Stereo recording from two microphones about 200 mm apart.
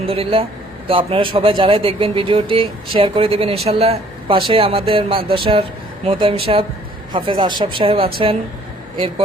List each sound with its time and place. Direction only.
0.0 s speech: 30° right (ahead or behind)